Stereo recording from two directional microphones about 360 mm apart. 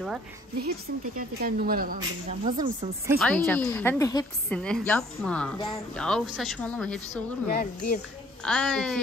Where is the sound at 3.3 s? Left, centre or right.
Centre.